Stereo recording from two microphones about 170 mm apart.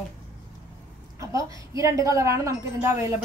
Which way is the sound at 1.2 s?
20° right (ahead or behind).